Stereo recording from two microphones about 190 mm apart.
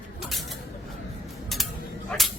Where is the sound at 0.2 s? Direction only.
Centre (ahead or behind).